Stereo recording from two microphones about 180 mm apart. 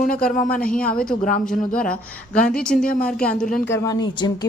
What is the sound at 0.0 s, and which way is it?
Speech, 50° left (ahead or behind).